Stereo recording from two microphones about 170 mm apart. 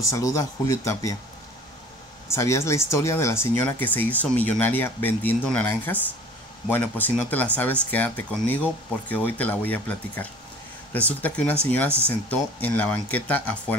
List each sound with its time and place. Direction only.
0.0 s speech: 20° left (ahead or behind)
2.2 s speech: 15° left (ahead or behind)